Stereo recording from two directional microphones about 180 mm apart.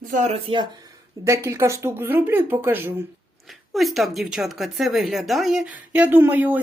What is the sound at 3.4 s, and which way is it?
Speech, centre (ahead or behind).